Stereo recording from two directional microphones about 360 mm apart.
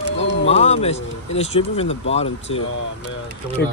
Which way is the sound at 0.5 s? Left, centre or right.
Centre.